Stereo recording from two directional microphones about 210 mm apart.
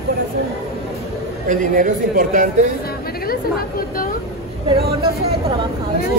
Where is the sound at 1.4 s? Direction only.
40° right (ahead or behind).